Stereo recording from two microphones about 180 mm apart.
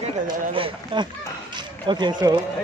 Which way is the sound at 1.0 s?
25° right (ahead or behind).